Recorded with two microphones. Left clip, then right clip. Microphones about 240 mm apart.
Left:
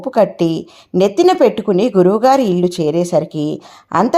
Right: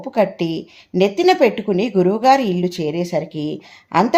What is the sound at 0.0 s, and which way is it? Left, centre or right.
Speech, left.